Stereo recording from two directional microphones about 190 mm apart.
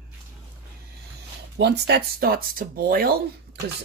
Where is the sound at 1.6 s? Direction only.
60° right (ahead or behind).